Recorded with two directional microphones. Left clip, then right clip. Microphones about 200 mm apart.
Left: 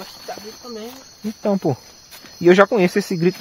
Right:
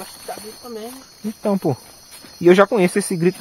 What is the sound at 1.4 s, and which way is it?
Speech, centre (ahead or behind).